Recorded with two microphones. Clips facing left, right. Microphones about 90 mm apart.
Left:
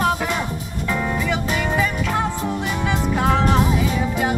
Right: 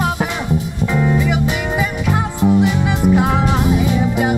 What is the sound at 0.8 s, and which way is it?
Music, 10° right (ahead or behind).